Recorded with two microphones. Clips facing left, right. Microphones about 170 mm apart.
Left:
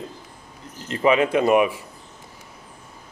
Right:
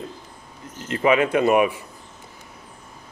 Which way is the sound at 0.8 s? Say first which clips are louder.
Even; 30° left (ahead or behind).